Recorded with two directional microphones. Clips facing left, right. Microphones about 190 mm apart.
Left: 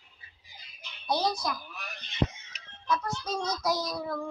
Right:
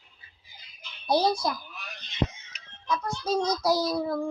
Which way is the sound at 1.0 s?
30° right (ahead or behind).